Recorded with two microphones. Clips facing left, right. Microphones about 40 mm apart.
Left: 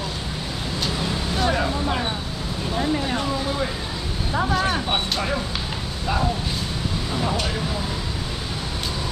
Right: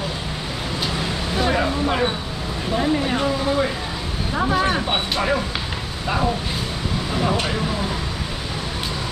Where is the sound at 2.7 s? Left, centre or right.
Centre.